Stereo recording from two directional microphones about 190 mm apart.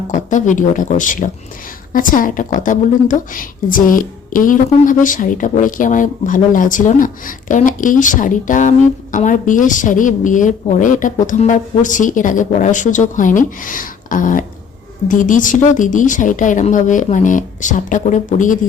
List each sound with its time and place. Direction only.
0.1 s a woman's voice: 40° left (ahead or behind)